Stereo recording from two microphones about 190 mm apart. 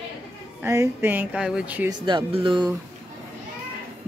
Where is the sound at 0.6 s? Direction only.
15° right (ahead or behind).